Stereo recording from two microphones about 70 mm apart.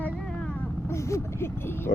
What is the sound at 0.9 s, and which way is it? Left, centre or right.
Speech, left.